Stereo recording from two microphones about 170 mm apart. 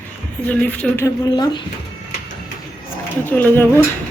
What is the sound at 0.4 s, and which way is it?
Speech, 10° left (ahead or behind).